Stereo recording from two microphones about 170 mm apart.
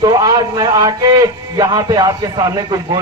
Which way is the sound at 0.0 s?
20° right (ahead or behind).